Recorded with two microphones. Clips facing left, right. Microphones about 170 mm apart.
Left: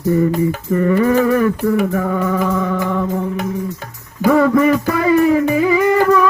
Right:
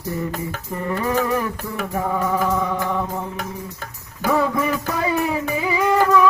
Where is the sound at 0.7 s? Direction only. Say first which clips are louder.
Left 8 dB; 70° left (ahead or behind).